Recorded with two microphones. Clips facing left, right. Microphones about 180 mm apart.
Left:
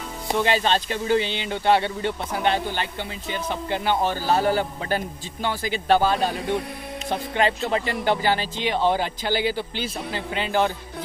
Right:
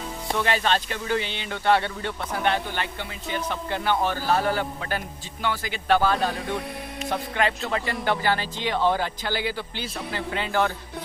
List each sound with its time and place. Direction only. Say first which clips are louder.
0.3 s speech: left 3 dB; 20° left (ahead or behind)